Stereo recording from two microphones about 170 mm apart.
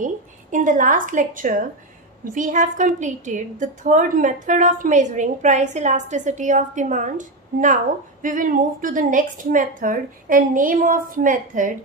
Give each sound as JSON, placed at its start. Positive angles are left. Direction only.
{"t": 0.0, "sound": "a woman's voice", "side_deg": -50}